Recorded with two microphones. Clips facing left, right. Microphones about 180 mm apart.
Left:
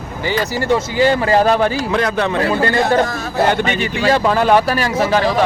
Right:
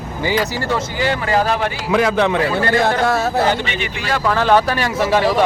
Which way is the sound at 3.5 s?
50° left (ahead or behind).